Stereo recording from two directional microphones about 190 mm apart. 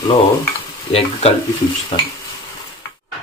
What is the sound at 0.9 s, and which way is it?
Speech, 30° left (ahead or behind).